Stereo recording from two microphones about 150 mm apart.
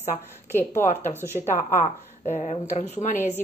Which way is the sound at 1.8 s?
45° left (ahead or behind).